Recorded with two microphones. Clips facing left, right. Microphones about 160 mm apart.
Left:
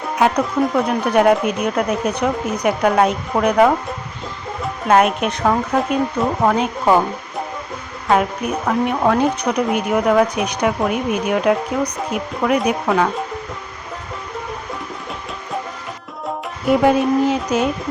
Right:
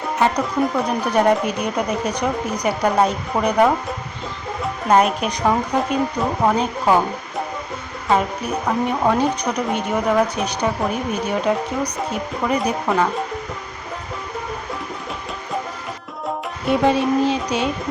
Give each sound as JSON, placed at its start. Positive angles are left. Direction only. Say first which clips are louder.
{"t": 0.2, "sound": "speech", "louder": "left 3 dB", "side_deg": 5}
{"t": 4.9, "sound": "speech", "louder": "left 2 dB", "side_deg": 0}
{"t": 16.6, "sound": "speech", "louder": "left 3 dB", "side_deg": 5}